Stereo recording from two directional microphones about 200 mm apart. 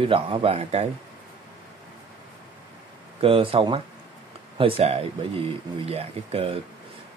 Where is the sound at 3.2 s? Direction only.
25° right (ahead or behind).